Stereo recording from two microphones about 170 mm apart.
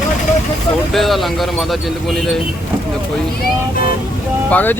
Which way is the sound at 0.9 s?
Centre (ahead or behind).